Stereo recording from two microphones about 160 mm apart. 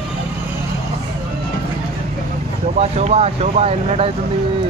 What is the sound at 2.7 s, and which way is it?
Speech, 45° right (ahead or behind).